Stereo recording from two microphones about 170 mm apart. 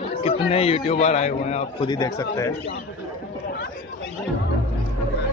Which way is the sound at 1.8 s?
20° left (ahead or behind).